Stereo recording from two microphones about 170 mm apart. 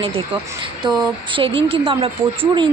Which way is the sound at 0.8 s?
25° right (ahead or behind).